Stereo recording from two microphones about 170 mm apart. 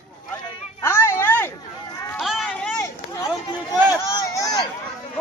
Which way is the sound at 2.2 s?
Centre (ahead or behind).